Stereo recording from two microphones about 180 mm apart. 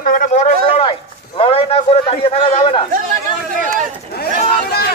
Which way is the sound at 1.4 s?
30° left (ahead or behind).